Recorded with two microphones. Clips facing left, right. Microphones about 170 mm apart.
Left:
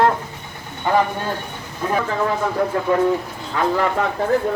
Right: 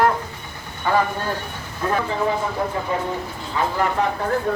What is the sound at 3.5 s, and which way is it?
Speech, 65° left (ahead or behind).